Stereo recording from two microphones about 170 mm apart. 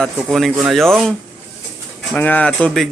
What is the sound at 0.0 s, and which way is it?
Speech, centre (ahead or behind).